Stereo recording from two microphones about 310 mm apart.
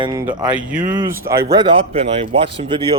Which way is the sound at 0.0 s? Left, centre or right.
Centre.